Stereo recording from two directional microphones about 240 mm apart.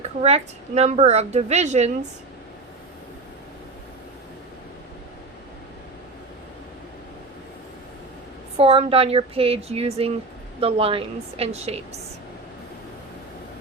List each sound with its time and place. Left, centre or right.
0.0 s a woman's voice: right
8.5 s a woman's voice: right